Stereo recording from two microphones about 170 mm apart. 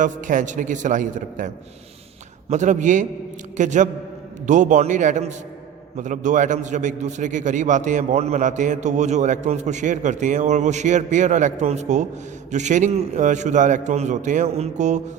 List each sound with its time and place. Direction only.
0.0 s a man's voice: 50° right (ahead or behind)
2.5 s a man's voice: 45° right (ahead or behind)